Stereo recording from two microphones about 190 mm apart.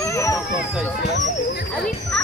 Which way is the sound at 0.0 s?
15° left (ahead or behind).